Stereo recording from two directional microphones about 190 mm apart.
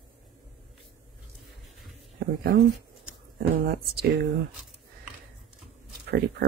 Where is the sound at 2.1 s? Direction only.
55° right (ahead or behind).